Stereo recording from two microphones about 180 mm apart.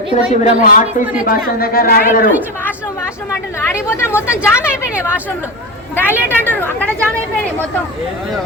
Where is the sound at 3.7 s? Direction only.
15° left (ahead or behind).